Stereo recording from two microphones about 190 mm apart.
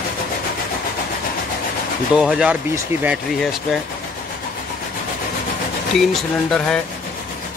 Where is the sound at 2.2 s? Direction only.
5° right (ahead or behind).